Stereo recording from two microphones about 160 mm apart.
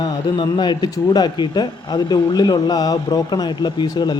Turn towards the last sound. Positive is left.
turn(degrees=25)  # may be behind; listen again after turning